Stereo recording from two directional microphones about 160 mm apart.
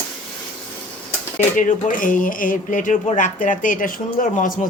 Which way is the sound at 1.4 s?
55° left (ahead or behind).